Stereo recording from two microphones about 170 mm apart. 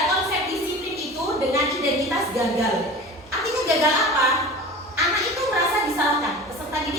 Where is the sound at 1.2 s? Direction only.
20° right (ahead or behind).